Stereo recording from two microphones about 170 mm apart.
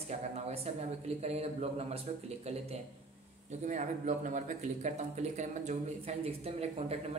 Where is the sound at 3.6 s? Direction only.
50° right (ahead or behind).